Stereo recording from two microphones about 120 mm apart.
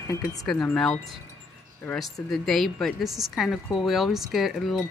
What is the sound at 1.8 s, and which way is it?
Speech, 15° left (ahead or behind).